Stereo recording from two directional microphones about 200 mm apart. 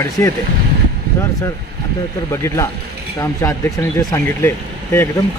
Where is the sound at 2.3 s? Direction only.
15° left (ahead or behind).